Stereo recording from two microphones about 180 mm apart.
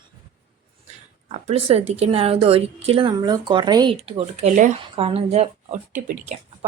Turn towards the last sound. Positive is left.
turn(degrees=-45)  # may be behind; listen again after turning